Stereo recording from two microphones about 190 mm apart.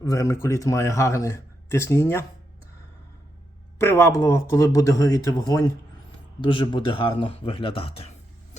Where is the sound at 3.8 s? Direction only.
15° left (ahead or behind); by 8.1 s 30° left (ahead or behind).